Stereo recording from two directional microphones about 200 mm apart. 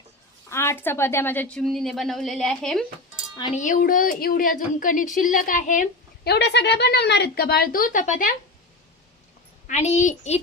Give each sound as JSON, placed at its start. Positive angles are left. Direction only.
{"t": 0.5, "sound": "a woman's voice", "side_deg": 15}
{"t": 3.5, "sound": "speech", "side_deg": 40}
{"t": 9.6, "sound": "a child's voice", "side_deg": 35}